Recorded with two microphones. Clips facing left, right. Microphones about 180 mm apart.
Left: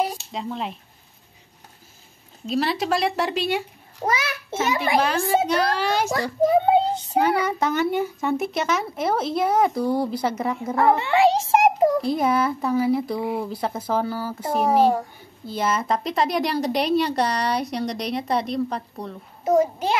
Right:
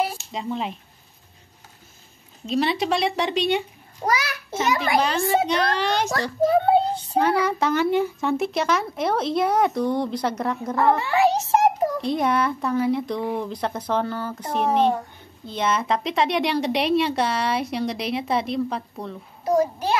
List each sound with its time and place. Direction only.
0.0 s a sound: centre (ahead or behind)
2.4 s a woman's voice: centre (ahead or behind)
4.0 s a sound: 25° left (ahead or behind)
5.0 s a child's voice: 5° left (ahead or behind)
6.9 s child singing: centre (ahead or behind)
7.4 s a woman's voice: centre (ahead or behind)
11.0 s a child's voice: 25° left (ahead or behind)
12.0 s a woman's voice: 5° left (ahead or behind)
19.4 s a child's voice: 25° left (ahead or behind)